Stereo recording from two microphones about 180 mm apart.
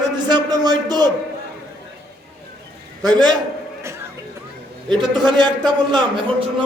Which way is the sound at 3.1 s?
25° right (ahead or behind).